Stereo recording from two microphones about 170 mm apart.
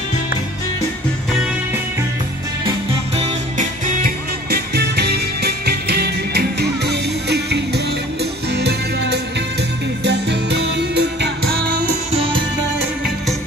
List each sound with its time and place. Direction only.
3.2 s music: 45° right (ahead or behind)
4.5 s music: 70° right (ahead or behind)
12.1 s music: 35° right (ahead or behind)